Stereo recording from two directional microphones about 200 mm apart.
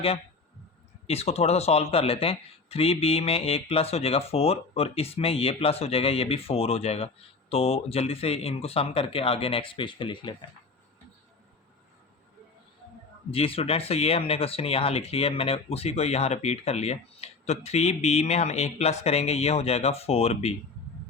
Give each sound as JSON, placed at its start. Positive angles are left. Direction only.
{"t": 1.0, "sound": "speech", "side_deg": 30}
{"t": 13.3, "sound": "speech", "side_deg": 30}